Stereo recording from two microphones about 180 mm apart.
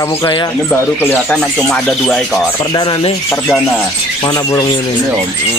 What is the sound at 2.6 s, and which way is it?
Speech, 25° left (ahead or behind).